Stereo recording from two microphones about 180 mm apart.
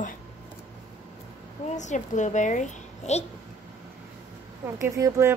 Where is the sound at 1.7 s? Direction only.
40° left (ahead or behind).